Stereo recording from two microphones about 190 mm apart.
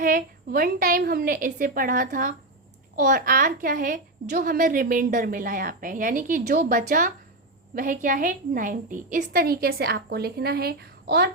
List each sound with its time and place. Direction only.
0.0 s a woman's voice: 50° right (ahead or behind)